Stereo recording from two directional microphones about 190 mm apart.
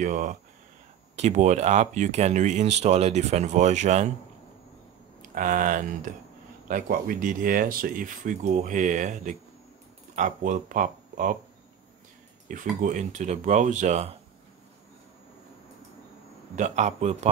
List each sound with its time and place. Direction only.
0.0 s speech: 40° right (ahead or behind)
5.3 s speech: 45° right (ahead or behind)
12.4 s speech: 45° right (ahead or behind)
16.5 s speech: 40° right (ahead or behind)